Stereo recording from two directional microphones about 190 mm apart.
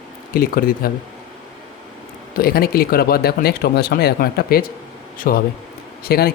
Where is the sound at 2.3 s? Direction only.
55° left (ahead or behind).